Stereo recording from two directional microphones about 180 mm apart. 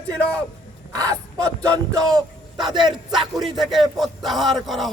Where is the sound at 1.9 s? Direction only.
20° right (ahead or behind).